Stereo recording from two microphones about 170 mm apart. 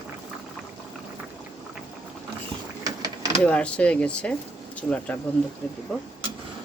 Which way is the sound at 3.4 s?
5° left (ahead or behind).